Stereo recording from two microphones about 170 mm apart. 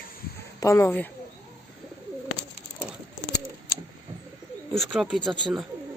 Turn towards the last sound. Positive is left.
turn(degrees=-30)  # may be behind; listen again after turning